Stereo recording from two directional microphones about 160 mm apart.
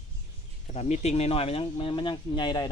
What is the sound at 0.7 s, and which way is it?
Speech, 45° left (ahead or behind).